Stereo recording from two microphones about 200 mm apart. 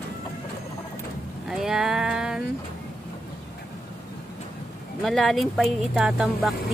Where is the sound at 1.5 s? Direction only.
5° right (ahead or behind).